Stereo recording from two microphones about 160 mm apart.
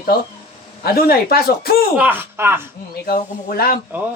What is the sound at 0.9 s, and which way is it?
Speech, 70° left (ahead or behind).